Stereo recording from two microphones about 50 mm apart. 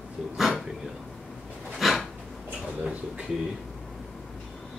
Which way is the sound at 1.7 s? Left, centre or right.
Centre.